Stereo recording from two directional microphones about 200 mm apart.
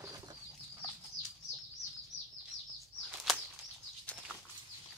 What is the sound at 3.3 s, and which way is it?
Bird flight, centre (ahead or behind).